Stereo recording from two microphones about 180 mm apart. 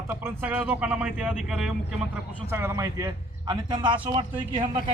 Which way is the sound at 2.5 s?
15° right (ahead or behind).